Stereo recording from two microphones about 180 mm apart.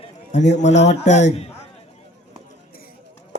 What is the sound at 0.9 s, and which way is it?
Speech, 40° left (ahead or behind).